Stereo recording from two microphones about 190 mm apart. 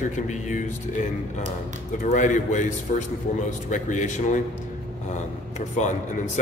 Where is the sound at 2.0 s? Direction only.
40° left (ahead or behind).